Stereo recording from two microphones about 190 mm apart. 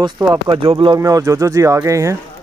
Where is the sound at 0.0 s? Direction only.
25° right (ahead or behind).